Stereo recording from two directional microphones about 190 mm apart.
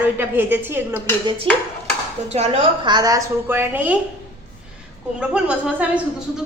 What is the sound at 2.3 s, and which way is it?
A woman's voice, 35° right (ahead or behind).